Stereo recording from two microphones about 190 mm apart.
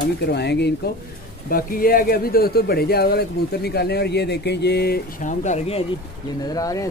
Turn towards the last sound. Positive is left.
turn(degrees=20)  # may be behind; listen again after turning